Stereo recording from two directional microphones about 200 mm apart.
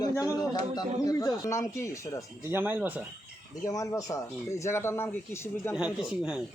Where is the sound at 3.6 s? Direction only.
15° left (ahead or behind).